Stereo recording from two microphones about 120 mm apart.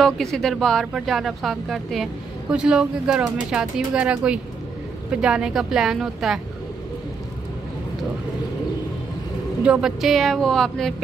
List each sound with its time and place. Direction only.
0.0 s speech: 5° left (ahead or behind)
9.7 s speech: 5° right (ahead or behind)